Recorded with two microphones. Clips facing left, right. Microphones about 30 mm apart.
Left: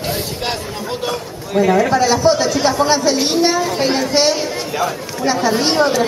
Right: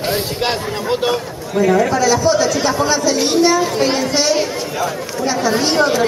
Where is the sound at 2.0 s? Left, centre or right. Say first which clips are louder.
Even; left.